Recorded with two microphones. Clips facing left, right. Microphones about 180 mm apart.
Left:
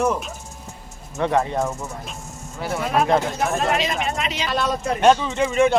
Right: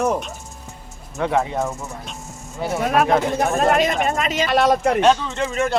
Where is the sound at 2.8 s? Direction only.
65° right (ahead or behind).